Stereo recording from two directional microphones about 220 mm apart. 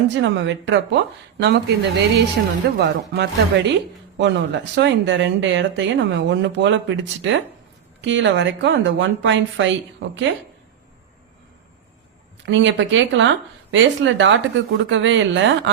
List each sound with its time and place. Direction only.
0.1 s speech: 55° right (ahead or behind)
12.5 s speech: 55° right (ahead or behind)